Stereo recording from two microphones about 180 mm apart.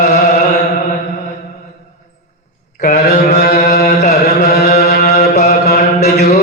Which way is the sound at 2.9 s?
40° left (ahead or behind).